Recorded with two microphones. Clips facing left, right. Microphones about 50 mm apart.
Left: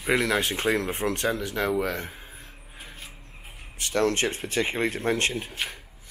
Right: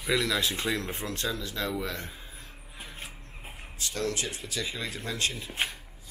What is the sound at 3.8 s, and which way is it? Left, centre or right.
Speech, left.